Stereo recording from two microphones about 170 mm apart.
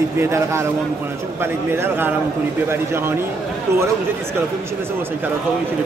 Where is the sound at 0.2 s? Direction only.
15° right (ahead or behind).